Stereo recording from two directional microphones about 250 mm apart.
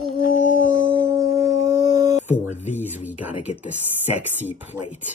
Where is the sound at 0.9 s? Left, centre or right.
Centre.